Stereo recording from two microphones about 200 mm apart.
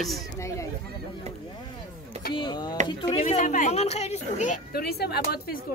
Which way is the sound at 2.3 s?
20° left (ahead or behind).